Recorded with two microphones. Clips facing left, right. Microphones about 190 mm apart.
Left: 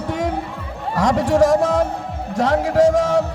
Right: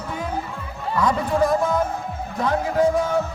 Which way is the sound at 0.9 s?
90° left.